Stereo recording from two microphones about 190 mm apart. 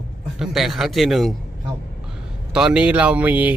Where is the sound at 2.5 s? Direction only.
5° right (ahead or behind).